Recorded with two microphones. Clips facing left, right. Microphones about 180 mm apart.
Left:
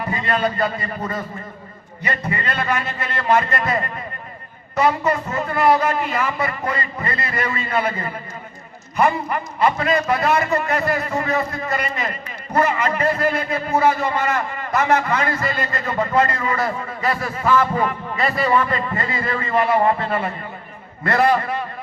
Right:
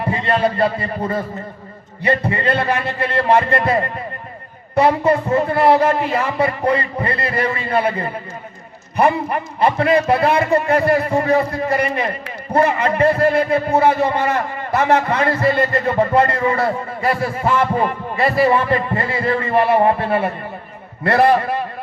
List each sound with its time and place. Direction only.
0.0 s a man's voice: 30° right (ahead or behind)